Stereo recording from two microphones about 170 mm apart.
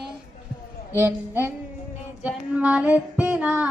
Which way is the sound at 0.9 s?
15° right (ahead or behind).